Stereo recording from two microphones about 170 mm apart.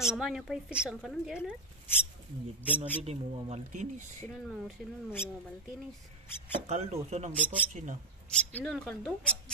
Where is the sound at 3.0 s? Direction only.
45° right (ahead or behind).